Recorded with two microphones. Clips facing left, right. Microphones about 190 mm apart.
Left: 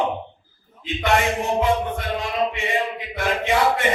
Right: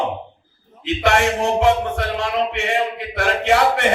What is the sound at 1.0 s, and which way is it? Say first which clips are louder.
Music: right 3 dB; 80° right.